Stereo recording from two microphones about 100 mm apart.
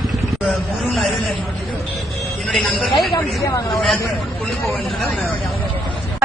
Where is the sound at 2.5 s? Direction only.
Centre (ahead or behind).